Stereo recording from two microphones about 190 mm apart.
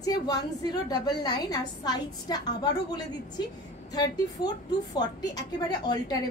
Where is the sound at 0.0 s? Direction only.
20° left (ahead or behind).